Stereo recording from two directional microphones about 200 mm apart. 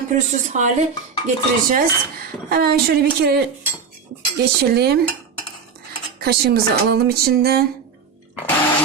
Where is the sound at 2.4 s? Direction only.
50° right (ahead or behind).